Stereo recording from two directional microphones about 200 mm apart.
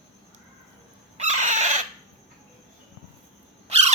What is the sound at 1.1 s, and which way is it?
Chicken, 35° right (ahead or behind).